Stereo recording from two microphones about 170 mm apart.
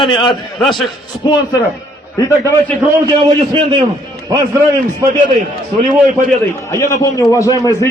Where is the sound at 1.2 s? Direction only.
25° left (ahead or behind).